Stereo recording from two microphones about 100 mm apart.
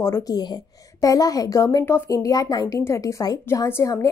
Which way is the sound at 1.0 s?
35° left (ahead or behind).